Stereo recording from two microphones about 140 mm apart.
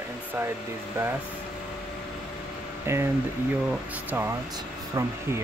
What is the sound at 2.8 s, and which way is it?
Speech, 20° right (ahead or behind).